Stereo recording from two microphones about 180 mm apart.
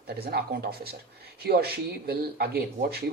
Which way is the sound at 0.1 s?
60° right (ahead or behind).